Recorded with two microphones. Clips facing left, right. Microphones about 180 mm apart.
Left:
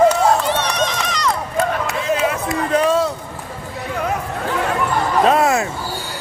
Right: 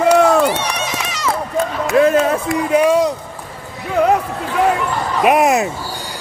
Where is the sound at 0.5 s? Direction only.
10° right (ahead or behind).